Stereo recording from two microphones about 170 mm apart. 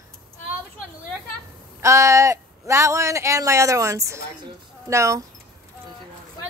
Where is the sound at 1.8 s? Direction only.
15° right (ahead or behind).